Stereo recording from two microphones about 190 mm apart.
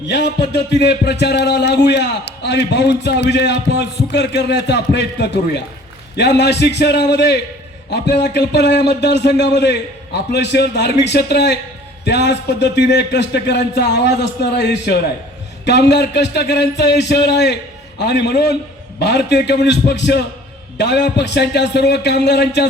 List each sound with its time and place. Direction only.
0.1 s a man's voice: 65° left (ahead or behind)